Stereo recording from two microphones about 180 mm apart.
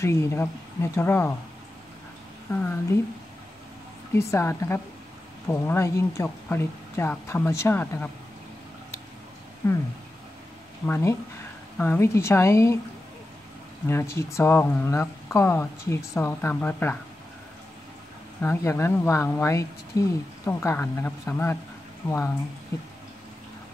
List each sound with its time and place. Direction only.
0.0 s speech: 15° left (ahead or behind)
2.5 s speech: 10° left (ahead or behind)
4.3 s speech: 15° left (ahead or behind)
9.6 s speech: 15° left (ahead or behind)
10.9 s speech: 15° left (ahead or behind)
13.8 s speech: 15° left (ahead or behind)
18.4 s speech: 15° left (ahead or behind)